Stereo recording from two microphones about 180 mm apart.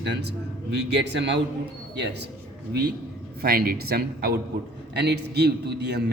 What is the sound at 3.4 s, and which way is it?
A man's voice, 60° right (ahead or behind).